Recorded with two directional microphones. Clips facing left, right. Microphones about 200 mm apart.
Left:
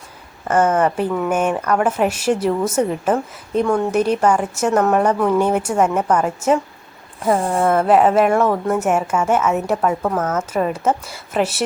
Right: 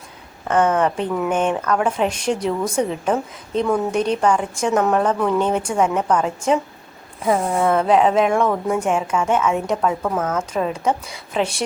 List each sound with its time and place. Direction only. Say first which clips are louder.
0.4 s a woman's voice: left 1 dB; 5° left (ahead or behind)
7.3 s speech: left 1 dB; 30° left (ahead or behind)
7.6 s a woman's voice: left 2 dB; 5° left (ahead or behind)